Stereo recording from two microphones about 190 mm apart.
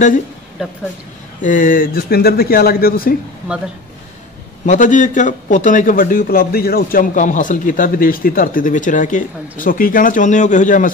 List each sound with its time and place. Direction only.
0.6 s speech: 5° right (ahead or behind)
1.4 s a man's voice: 45° left (ahead or behind)
4.6 s a man's voice: 40° left (ahead or behind)